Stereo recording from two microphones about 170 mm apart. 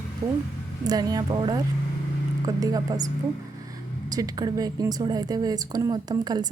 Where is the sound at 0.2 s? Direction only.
20° right (ahead or behind).